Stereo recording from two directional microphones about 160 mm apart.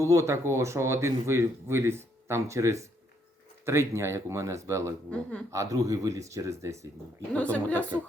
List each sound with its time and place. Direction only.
0.0 s speech: 20° right (ahead or behind)
7.3 s a woman's voice: 10° left (ahead or behind)